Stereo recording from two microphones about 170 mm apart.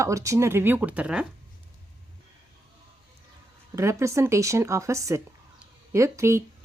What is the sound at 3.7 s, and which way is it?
A woman's voice, 15° right (ahead or behind).